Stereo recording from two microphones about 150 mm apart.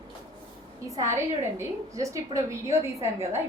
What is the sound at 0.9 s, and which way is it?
A woman's voice, 20° right (ahead or behind).